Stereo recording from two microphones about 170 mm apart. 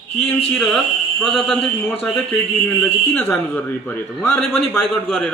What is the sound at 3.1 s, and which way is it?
A man's voice, 10° left (ahead or behind).